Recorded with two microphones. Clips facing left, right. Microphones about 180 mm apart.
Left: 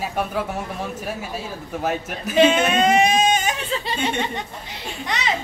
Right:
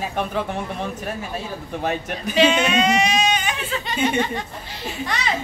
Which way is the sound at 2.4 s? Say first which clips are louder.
Left 2 dB; 50° left (ahead or behind).